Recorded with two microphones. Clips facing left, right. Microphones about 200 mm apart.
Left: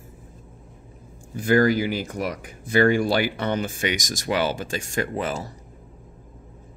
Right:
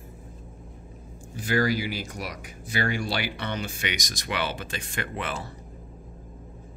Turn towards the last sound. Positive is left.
turn(degrees=40)  # may be behind; listen again after turning